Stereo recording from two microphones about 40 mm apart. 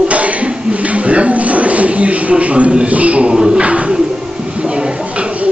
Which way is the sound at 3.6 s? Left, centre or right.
Right.